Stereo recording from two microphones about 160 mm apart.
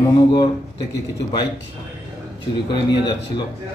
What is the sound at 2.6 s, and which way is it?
Speech, 30° left (ahead or behind).